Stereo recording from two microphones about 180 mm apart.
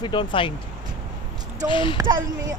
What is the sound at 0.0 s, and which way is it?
Speech, 25° left (ahead or behind).